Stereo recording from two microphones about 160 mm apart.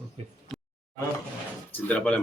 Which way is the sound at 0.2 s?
45° right (ahead or behind).